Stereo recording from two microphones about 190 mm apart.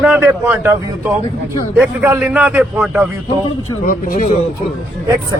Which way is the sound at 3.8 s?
45° left (ahead or behind).